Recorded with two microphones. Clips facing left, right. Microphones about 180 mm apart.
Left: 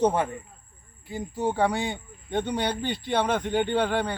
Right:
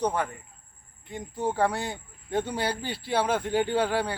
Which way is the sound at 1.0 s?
5° left (ahead or behind).